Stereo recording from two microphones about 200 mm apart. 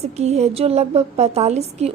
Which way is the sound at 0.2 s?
35° right (ahead or behind).